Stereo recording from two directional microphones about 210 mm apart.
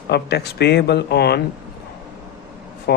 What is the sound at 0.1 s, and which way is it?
Speech, 50° left (ahead or behind).